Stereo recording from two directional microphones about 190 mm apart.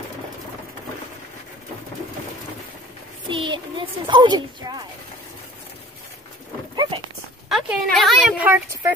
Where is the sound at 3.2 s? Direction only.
25° right (ahead or behind).